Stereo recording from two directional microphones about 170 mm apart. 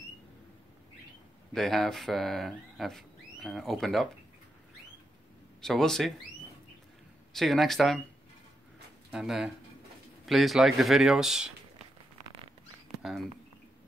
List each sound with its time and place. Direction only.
1.5 s speech: centre (ahead or behind)
5.6 s speech: 5° left (ahead or behind)
7.3 s speech: centre (ahead or behind)
9.1 s speech: 5° right (ahead or behind)